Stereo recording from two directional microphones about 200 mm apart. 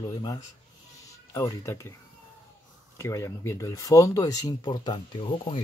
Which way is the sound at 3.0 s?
15° left (ahead or behind).